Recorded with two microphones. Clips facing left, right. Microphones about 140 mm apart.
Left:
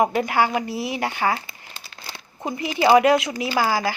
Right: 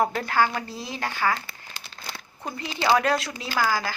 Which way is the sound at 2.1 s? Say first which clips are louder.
Left 7 dB; 20° left (ahead or behind).